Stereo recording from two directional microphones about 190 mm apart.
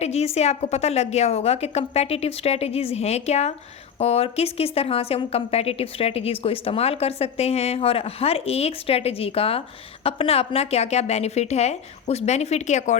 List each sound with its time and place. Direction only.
0.0 s a woman's voice: 35° left (ahead or behind)